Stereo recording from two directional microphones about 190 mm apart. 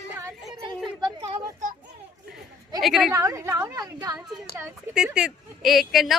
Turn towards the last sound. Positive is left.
turn(degrees=0)  # may be behind; listen again after turning